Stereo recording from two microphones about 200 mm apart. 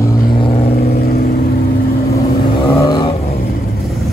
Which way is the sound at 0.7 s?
50° left (ahead or behind).